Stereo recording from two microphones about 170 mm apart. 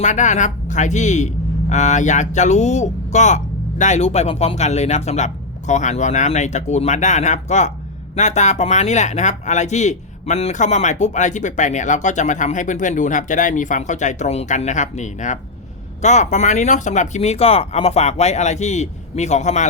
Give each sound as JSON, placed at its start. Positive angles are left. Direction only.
{"t": 0.0, "sound": "speech", "side_deg": 45}